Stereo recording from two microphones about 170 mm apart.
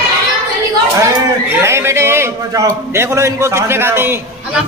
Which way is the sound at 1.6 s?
15° right (ahead or behind).